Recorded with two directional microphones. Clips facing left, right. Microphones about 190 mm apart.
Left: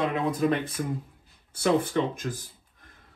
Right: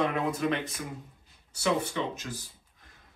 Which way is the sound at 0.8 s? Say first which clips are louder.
Left 8 dB; 40° left (ahead or behind).